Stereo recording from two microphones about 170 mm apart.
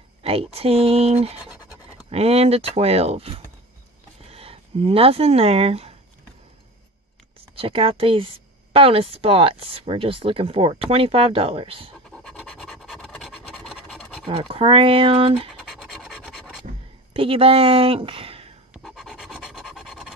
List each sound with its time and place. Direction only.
0.2 s speech: 35° right (ahead or behind)
7.5 s speech: 30° right (ahead or behind)
12.2 s scratch: 5° left (ahead or behind)
14.2 s speech: 30° right (ahead or behind)
15.6 s scratch: centre (ahead or behind)
17.1 s speech: 35° right (ahead or behind)
18.7 s a sound: centre (ahead or behind)